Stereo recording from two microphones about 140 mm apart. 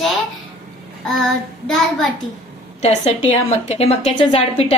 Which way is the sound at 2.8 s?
50° left (ahead or behind).